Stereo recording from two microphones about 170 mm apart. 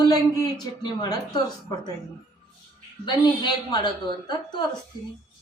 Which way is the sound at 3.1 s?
25° left (ahead or behind).